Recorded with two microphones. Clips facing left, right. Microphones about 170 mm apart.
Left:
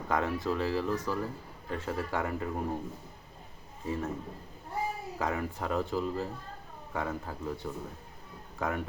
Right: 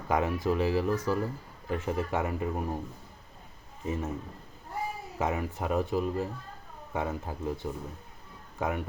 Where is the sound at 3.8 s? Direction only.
20° right (ahead or behind).